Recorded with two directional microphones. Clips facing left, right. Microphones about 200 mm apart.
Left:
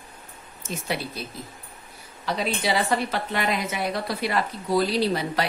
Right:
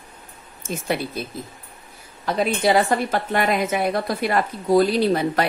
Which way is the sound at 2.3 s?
50° right (ahead or behind).